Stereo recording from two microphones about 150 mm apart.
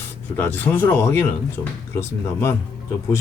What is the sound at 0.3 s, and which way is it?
Speech, 10° left (ahead or behind).